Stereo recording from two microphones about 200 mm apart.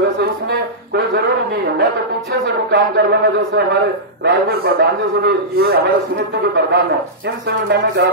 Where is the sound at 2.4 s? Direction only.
55° right (ahead or behind).